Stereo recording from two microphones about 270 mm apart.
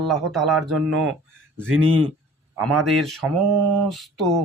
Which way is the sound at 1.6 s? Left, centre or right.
Right.